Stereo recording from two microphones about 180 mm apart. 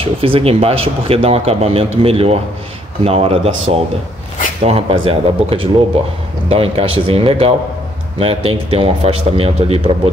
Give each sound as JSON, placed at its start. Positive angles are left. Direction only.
{"t": 0.0, "sound": "speech", "side_deg": -30}